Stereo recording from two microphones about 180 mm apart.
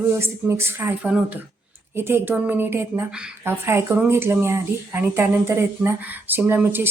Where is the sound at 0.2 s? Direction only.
15° right (ahead or behind).